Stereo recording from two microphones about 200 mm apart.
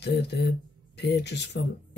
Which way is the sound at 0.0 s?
55° left (ahead or behind).